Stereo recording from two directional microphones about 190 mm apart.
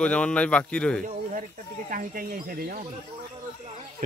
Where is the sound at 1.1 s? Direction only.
45° right (ahead or behind).